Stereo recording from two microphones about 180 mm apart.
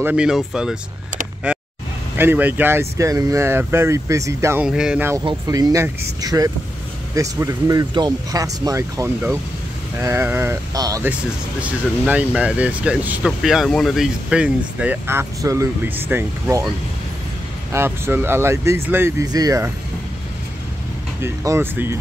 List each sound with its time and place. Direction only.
0.0 s speech: 5° right (ahead or behind)
1.5 s vehicle: 5° right (ahead or behind)
2.1 s speech: 10° right (ahead or behind)
4.6 s speech: 5° right (ahead or behind)
5.2 s speech: 20° right (ahead or behind)
11.6 s speech: 10° right (ahead or behind)
17.7 s speech: 10° right (ahead or behind)
21.2 s speech: 15° right (ahead or behind)